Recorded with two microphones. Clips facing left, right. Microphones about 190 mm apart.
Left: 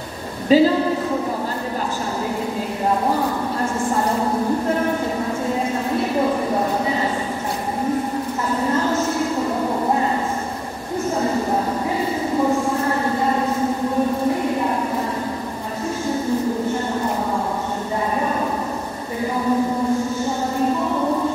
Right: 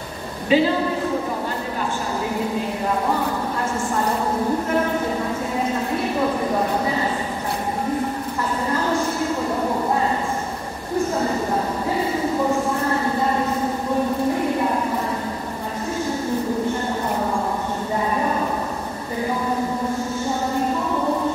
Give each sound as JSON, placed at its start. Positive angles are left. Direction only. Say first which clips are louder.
{"t": 0.5, "sound": "speech", "louder": "left 4 dB", "side_deg": 40}